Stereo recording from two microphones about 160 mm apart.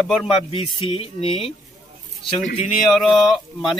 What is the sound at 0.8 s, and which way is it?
Speech, 35° left (ahead or behind).